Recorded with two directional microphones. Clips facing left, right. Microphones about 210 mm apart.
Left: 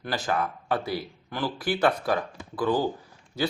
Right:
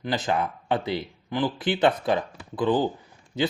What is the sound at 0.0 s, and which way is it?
A man's voice, 20° right (ahead or behind).